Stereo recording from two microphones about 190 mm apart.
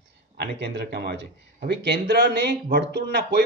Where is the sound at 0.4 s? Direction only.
60° right (ahead or behind).